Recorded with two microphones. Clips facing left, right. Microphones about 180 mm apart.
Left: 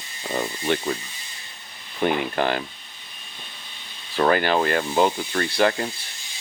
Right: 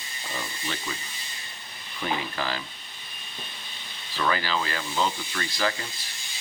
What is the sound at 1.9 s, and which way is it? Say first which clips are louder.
Speech: left 8 dB; 55° left (ahead or behind).